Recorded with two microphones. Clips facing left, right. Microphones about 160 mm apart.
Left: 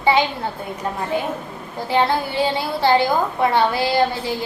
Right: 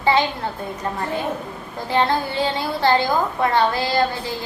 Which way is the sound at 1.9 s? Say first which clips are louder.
Left 1 dB; 10° left (ahead or behind).